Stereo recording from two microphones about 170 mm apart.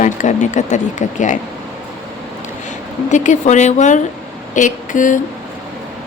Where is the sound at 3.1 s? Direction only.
45° left (ahead or behind).